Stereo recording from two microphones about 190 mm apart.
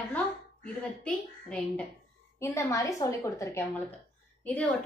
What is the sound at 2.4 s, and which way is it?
A woman's voice, 15° left (ahead or behind).